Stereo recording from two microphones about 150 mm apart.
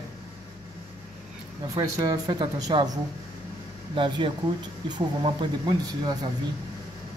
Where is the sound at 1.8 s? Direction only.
25° right (ahead or behind).